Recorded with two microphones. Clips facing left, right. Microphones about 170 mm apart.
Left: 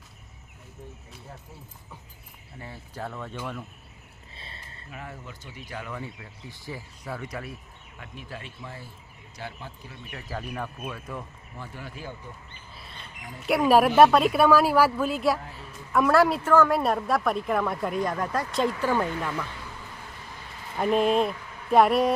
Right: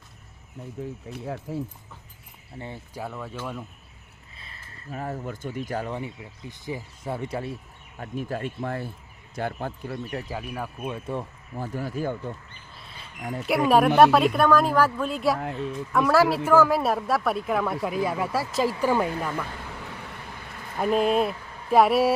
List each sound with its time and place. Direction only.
0.8 s speech: 90° right
2.9 s speech: 5° right (ahead or behind)
4.4 s a sound: 30° left (ahead or behind)
4.9 s speech: 40° right (ahead or behind)
6.5 s speech: 20° right (ahead or behind)
7.9 s speech: 40° right (ahead or behind)
10.3 s speech: 10° right (ahead or behind)
10.8 s speech: 25° right (ahead or behind); by 12.1 s 40° right (ahead or behind)
12.7 s squawk: centre (ahead or behind)
13.4 s speech: centre (ahead or behind)
15.4 s a woman's voice: 65° right (ahead or behind)
15.9 s speech: centre (ahead or behind)
20.7 s speech: centre (ahead or behind)